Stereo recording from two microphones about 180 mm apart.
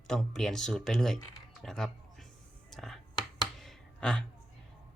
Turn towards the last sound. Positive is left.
turn(degrees=5)  # may be behind; listen again after turning